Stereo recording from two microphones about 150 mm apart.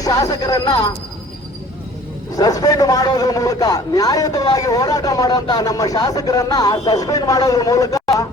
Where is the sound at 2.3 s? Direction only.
25° left (ahead or behind).